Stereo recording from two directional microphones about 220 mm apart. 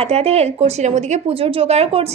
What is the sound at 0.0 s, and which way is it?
Speech, 25° right (ahead or behind).